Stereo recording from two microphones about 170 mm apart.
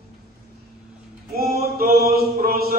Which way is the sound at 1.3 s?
65° right (ahead or behind).